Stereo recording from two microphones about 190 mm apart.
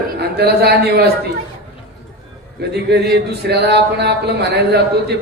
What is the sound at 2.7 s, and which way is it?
A man's voice, 60° right (ahead or behind).